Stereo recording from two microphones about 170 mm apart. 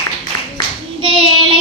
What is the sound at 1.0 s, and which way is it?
Child singing, 30° right (ahead or behind).